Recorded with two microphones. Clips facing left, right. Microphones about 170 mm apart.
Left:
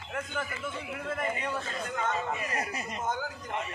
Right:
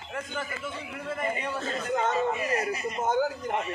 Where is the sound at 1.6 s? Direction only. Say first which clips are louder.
Right 6 dB; 25° right (ahead or behind).